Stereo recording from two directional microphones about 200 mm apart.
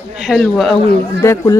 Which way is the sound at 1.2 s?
15° left (ahead or behind).